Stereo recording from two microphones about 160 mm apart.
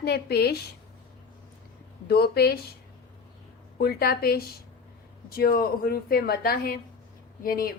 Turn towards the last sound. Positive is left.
turn(degrees=65)  # may be behind; listen again after turning